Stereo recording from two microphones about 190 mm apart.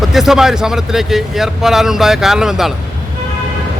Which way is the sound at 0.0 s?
Centre (ahead or behind).